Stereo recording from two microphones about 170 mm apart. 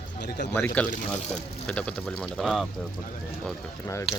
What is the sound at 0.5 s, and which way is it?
Speech, 10° left (ahead or behind).